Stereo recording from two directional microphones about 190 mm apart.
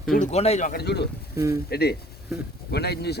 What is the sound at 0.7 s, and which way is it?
Speech, 60° left (ahead or behind).